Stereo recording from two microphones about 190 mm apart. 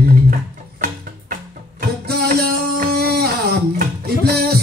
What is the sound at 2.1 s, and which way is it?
Music, 55° right (ahead or behind).